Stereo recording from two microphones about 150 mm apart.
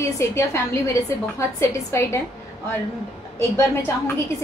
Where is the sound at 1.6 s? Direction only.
15° left (ahead or behind).